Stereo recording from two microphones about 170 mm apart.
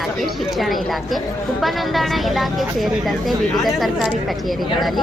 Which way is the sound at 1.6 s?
Centre (ahead or behind).